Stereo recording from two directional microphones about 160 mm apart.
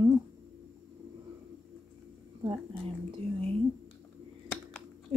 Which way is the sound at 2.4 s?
30° right (ahead or behind).